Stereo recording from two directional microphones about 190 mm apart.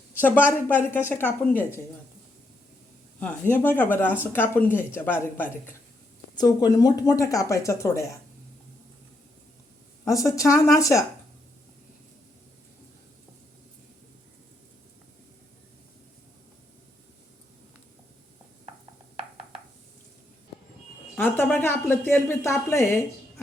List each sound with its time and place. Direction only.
0.1 s speech: 10° left (ahead or behind)
3.2 s speech: 10° left (ahead or behind)
10.0 s speech: 15° left (ahead or behind)
21.2 s a woman's voice: 10° left (ahead or behind)